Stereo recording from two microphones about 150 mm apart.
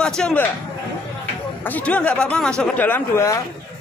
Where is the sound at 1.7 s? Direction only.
10° left (ahead or behind).